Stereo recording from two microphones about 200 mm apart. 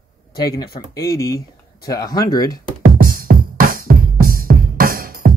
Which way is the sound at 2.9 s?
45° right (ahead or behind).